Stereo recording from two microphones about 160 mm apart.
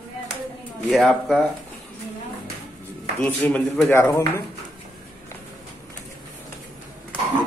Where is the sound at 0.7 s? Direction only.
Centre (ahead or behind).